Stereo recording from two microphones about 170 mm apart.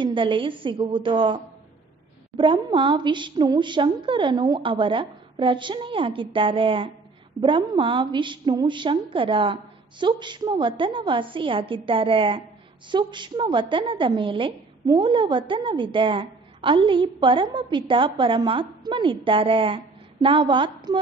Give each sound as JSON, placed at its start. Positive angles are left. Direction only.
{"t": 0.0, "sound": "a woman's voice", "side_deg": -30}